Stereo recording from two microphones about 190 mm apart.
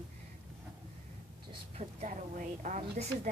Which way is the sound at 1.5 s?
35° right (ahead or behind).